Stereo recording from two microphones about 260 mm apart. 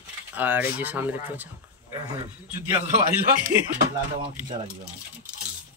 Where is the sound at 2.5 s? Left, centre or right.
Centre.